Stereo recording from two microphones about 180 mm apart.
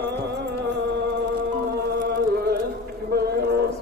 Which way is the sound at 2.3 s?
60° right (ahead or behind).